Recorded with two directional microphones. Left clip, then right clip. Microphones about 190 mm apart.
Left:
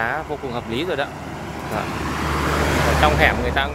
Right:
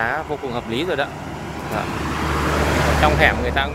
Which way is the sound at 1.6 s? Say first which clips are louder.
Right 1 dB; 10° left (ahead or behind).